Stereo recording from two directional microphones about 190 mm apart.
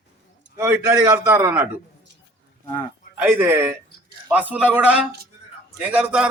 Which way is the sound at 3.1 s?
10° right (ahead or behind).